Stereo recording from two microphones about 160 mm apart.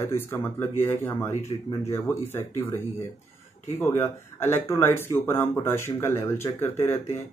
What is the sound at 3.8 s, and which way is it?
Speech, 15° left (ahead or behind).